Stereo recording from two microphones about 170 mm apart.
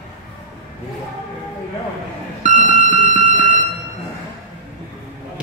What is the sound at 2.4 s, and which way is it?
Music, 45° right (ahead or behind).